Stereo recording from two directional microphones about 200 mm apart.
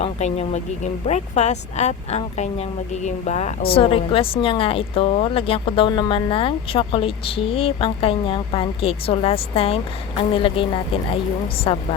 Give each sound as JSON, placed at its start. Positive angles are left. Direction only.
{"t": 0.0, "sound": "speech", "side_deg": 30}